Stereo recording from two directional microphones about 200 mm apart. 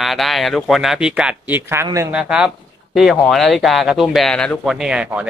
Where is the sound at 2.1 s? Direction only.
5° right (ahead or behind).